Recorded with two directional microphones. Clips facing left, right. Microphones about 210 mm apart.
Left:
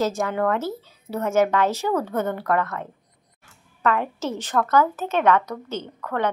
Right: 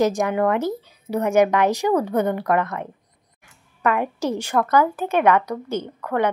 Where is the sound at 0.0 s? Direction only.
15° right (ahead or behind).